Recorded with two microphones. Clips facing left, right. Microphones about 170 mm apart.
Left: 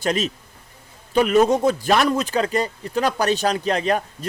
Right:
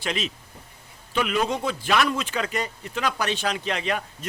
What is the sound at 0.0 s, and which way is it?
A man's voice, 40° left (ahead or behind).